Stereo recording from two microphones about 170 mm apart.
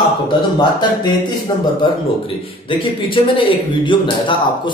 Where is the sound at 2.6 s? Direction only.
30° left (ahead or behind).